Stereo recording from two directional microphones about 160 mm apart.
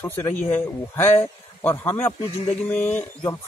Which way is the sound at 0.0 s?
15° left (ahead or behind).